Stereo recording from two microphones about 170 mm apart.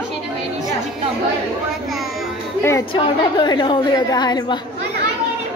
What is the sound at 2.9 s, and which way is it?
A woman's voice, 25° left (ahead or behind).